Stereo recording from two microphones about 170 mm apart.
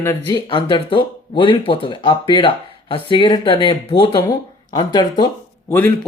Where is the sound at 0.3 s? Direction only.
30° left (ahead or behind).